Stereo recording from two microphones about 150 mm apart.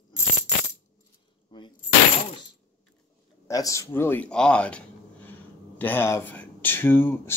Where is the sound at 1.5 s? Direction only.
30° left (ahead or behind).